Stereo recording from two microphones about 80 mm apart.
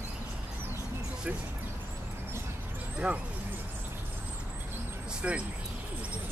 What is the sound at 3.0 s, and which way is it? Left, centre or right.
Speech, centre.